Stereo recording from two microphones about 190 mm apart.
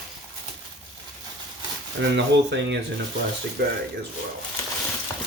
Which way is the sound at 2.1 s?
65° right (ahead or behind).